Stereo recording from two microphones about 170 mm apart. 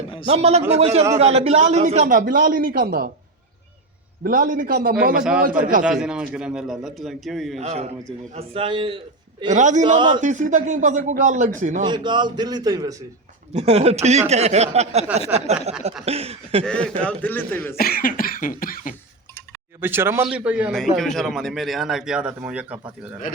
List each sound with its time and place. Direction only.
0.3 s a man's voice: 40° right (ahead or behind); by 3.1 s 60° right (ahead or behind)
4.2 s a man's voice: 55° right (ahead or behind)
5.8 s a man's voice: 5° right (ahead or behind)
7.6 s speech: 40° right (ahead or behind)
9.5 s a man's voice: 45° right (ahead or behind)
11.9 s a man's voice: 25° right (ahead or behind)
13.5 s speech: 40° right (ahead or behind)
16.6 s a man's voice: 5° left (ahead or behind)
17.7 s cough: 60° left (ahead or behind)
19.8 s a man's voice: 15° right (ahead or behind)